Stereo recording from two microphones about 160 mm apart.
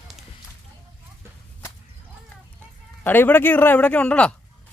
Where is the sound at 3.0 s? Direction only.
15° left (ahead or behind).